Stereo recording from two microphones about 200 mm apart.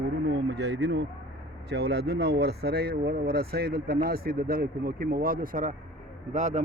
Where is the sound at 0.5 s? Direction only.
60° right (ahead or behind).